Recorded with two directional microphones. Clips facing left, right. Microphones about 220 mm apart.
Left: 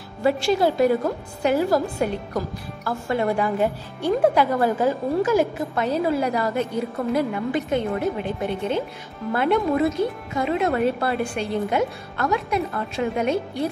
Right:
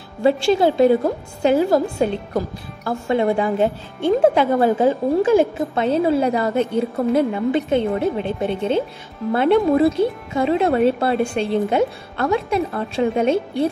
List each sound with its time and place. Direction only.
0.2 s a woman's voice: 25° right (ahead or behind)